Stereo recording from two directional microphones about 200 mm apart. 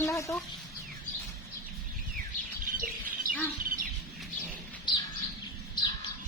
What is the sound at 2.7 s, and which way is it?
Bird, 45° right (ahead or behind).